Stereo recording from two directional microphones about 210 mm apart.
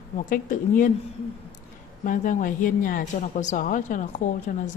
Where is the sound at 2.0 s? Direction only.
40° left (ahead or behind).